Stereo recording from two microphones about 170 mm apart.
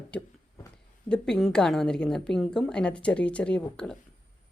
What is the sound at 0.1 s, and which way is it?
A woman's voice, 5° left (ahead or behind).